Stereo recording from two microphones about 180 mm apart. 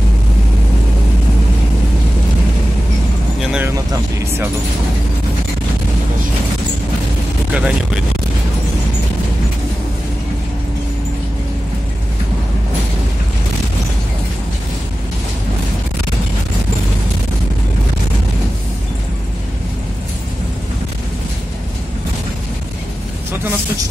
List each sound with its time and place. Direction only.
3.3 s vehicle: 5° right (ahead or behind)
3.7 s speech: 20° right (ahead or behind)
7.5 s speech: 5° right (ahead or behind)